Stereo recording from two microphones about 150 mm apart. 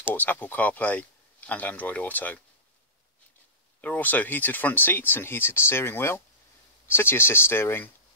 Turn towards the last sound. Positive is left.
turn(degrees=15)  # may be behind; listen again after turning